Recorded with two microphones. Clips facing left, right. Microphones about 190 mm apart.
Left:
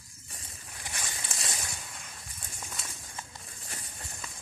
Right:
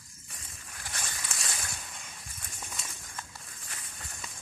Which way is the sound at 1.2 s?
25° left (ahead or behind).